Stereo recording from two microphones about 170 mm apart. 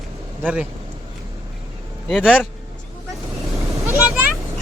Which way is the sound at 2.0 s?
5° left (ahead or behind).